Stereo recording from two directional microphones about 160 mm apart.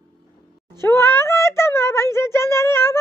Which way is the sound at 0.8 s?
15° left (ahead or behind).